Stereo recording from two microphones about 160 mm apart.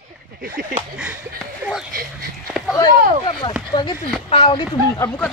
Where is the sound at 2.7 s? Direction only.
30° left (ahead or behind).